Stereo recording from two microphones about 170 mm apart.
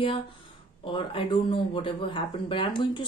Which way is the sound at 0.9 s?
30° left (ahead or behind).